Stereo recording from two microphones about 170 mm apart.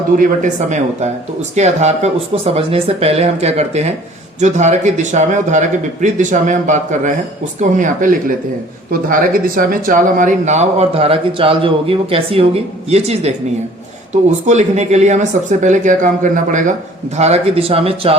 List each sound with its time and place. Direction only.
0.2 s a man's voice: 45° right (ahead or behind)